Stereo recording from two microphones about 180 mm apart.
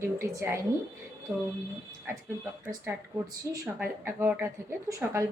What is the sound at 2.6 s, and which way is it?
A woman's voice, 10° right (ahead or behind).